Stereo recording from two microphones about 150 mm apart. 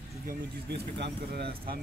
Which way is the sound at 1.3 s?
90° right.